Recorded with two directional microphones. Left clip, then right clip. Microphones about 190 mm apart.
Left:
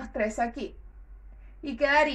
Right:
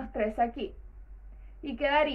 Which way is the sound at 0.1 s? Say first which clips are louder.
Even; 30° left (ahead or behind).